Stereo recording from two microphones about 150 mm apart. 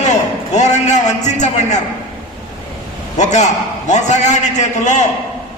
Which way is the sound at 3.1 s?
50° left (ahead or behind).